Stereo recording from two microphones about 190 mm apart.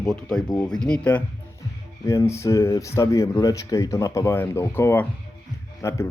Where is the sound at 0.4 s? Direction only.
20° left (ahead or behind).